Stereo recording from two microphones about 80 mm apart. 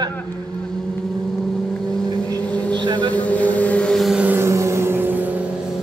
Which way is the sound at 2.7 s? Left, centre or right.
Right.